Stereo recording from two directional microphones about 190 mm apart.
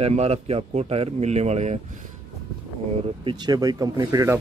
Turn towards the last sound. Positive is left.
turn(degrees=-15)  # may be behind; listen again after turning